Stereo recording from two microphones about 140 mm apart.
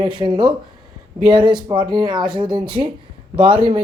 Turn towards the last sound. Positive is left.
turn(degrees=-35)  # may be behind; listen again after turning